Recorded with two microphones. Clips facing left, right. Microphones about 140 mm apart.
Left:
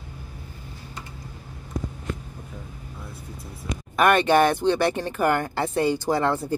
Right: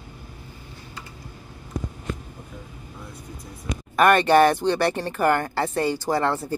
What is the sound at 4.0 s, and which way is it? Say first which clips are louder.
Speech: right 2 dB; 5° left (ahead or behind).